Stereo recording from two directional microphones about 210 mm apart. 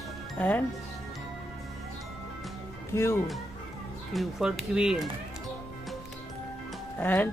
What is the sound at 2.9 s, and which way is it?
Speech, 10° left (ahead or behind).